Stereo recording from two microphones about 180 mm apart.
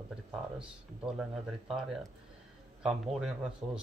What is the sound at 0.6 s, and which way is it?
Speech, 5° right (ahead or behind).